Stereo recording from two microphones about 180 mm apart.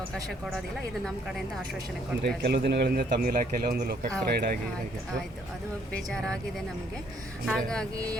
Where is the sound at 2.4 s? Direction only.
65° right (ahead or behind).